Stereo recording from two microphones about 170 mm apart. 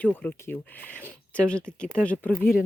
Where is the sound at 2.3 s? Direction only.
55° left (ahead or behind).